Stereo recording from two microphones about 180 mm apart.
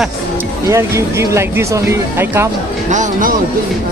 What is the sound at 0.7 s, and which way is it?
Speech, 15° right (ahead or behind).